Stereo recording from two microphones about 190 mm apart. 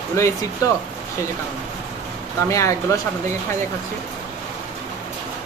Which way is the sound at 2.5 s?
15° left (ahead or behind).